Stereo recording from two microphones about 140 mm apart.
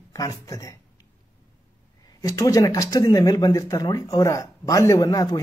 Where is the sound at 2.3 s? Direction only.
25° left (ahead or behind).